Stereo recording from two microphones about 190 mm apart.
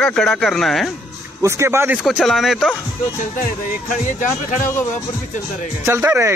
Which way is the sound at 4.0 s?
40° left (ahead or behind).